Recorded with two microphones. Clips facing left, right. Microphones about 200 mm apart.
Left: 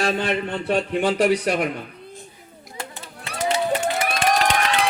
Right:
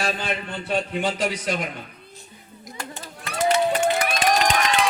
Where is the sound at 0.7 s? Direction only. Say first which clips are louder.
Left 3 dB; 60° left (ahead or behind).